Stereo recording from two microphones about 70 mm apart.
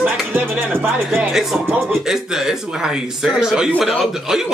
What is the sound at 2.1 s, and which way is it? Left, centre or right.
Speech, centre.